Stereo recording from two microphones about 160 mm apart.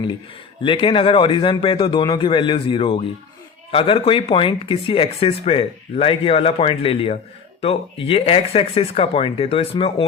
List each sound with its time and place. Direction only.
0.6 s speech: 30° left (ahead or behind)